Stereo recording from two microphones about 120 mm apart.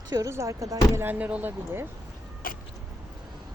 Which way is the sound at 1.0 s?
15° right (ahead or behind).